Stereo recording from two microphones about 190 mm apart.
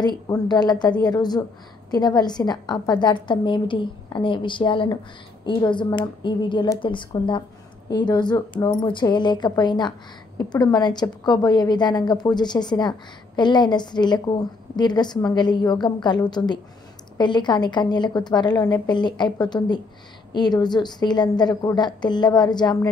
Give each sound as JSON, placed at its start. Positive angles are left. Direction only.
{"t": 0.0, "sound": "speech", "side_deg": 20}